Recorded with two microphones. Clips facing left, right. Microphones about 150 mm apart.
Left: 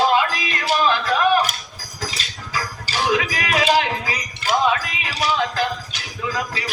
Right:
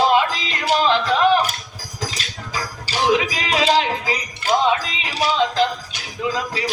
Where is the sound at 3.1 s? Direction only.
25° right (ahead or behind).